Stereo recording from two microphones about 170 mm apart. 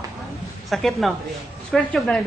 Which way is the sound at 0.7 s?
Centre (ahead or behind).